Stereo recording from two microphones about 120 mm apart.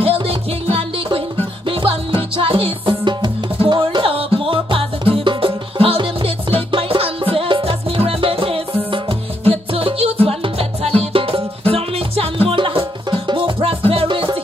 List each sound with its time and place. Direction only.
0.0 s music: 50° right (ahead or behind)